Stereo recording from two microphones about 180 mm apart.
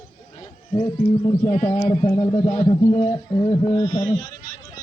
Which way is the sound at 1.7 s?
30° left (ahead or behind).